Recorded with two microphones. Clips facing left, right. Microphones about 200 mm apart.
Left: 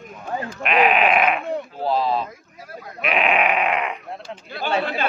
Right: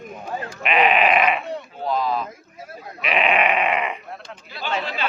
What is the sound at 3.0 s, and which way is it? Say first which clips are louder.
Sheep: even; centre (ahead or behind).